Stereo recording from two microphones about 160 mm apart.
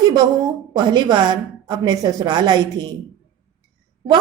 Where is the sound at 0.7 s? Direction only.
25° right (ahead or behind).